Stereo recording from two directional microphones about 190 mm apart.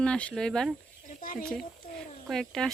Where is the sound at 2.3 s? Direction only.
Centre (ahead or behind).